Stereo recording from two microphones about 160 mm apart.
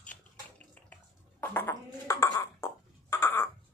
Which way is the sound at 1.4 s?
10° left (ahead or behind).